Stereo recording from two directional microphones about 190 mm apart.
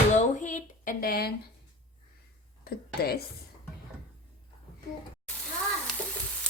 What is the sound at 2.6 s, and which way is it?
Speech, 55° left (ahead or behind).